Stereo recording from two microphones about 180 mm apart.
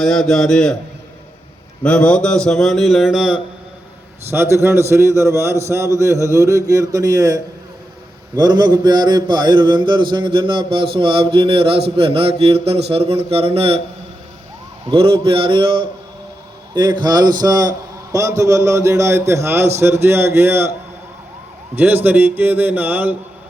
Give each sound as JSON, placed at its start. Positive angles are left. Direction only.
{"t": 0.0, "sound": "a man's voice", "side_deg": 0}
{"t": 1.8, "sound": "a man's voice", "side_deg": 5}
{"t": 4.3, "sound": "a man's voice", "side_deg": -15}
{"t": 8.4, "sound": "mantra", "side_deg": -25}
{"t": 11.9, "sound": "speech", "side_deg": -30}
{"t": 14.8, "sound": "mantra", "side_deg": -30}
{"t": 16.7, "sound": "a man's voice", "side_deg": -25}
{"t": 21.8, "sound": "a man's voice", "side_deg": -10}